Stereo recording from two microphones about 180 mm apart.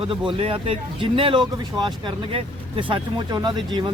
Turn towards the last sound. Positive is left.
turn(degrees=-25)  # may be behind; listen again after turning